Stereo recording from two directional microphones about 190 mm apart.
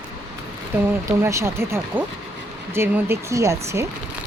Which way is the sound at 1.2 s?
15° right (ahead or behind).